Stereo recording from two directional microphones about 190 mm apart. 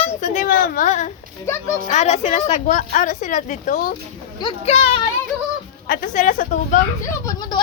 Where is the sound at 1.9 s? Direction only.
35° left (ahead or behind).